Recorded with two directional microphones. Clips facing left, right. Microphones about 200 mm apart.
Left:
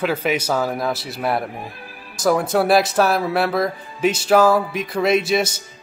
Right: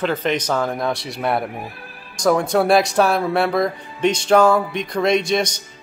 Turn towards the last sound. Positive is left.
turn(degrees=5)  # may be behind; listen again after turning